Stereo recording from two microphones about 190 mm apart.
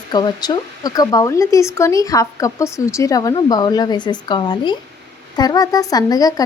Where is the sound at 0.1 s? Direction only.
20° left (ahead or behind).